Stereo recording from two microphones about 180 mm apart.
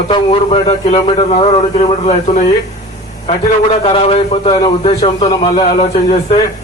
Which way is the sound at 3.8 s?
35° left (ahead or behind).